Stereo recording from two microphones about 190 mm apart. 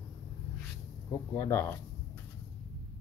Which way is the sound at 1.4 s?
15° left (ahead or behind).